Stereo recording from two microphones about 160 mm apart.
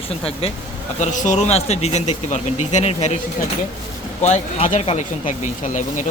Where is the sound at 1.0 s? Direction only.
50° left (ahead or behind).